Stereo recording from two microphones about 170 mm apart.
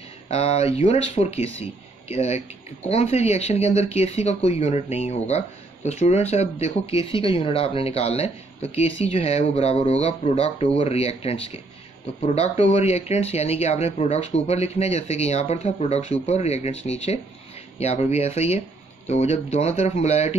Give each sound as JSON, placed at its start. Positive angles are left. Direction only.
{"t": 0.3, "sound": "speech", "side_deg": 35}